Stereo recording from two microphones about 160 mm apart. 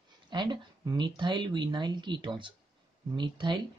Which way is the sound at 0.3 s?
30° right (ahead or behind).